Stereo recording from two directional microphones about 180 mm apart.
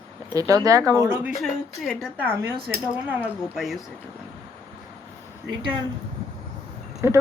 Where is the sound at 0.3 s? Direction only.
20° right (ahead or behind).